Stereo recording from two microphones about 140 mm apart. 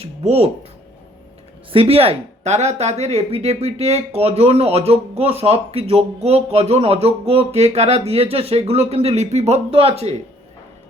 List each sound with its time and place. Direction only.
0.0 s speech: 50° right (ahead or behind)
1.7 s speech: 45° right (ahead or behind)